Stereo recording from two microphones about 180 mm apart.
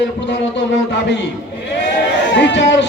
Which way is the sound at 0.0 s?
75° left (ahead or behind).